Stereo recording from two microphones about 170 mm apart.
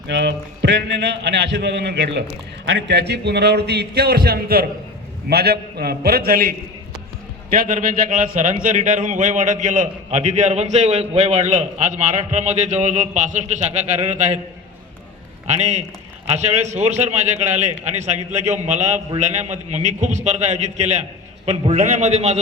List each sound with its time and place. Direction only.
0.1 s a man's voice: 90° right; by 14.3 s 45° right (ahead or behind)
15.4 s a man's voice: 40° right (ahead or behind)